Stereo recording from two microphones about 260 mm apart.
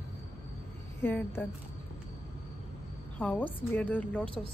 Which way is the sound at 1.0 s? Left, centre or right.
Centre.